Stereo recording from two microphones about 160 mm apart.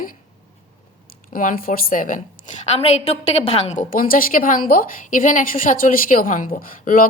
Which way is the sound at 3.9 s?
60° left (ahead or behind).